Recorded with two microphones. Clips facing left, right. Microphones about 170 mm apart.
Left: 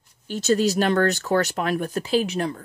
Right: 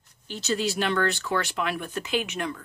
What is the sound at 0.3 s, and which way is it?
Speech, 45° left (ahead or behind).